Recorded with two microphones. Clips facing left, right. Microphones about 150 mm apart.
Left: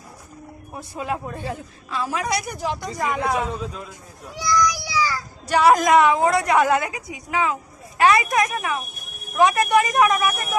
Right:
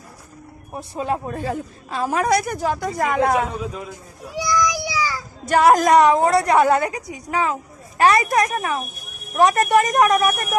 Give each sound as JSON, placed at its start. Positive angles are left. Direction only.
{"t": 0.7, "sound": "a woman's voice", "side_deg": -30}
{"t": 4.4, "sound": "child singing", "side_deg": -15}
{"t": 5.5, "sound": "a woman's voice", "side_deg": -45}